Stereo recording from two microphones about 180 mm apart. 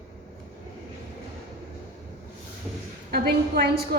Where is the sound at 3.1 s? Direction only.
55° right (ahead or behind).